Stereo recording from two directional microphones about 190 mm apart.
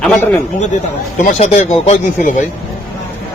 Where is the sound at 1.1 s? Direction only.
40° left (ahead or behind).